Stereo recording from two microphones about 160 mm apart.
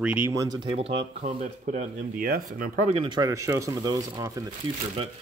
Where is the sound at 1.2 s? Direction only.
50° right (ahead or behind).